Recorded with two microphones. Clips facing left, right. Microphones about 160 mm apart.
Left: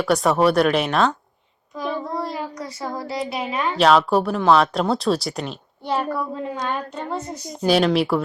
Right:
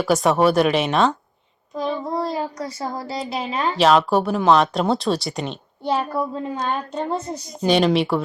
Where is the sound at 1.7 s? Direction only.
30° right (ahead or behind).